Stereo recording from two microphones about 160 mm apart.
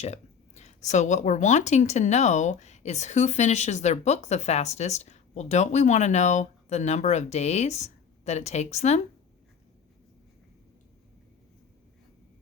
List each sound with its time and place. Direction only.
0.0 s speech: 45° left (ahead or behind)